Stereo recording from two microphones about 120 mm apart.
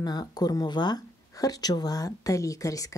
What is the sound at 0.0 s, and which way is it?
Speech, 35° left (ahead or behind).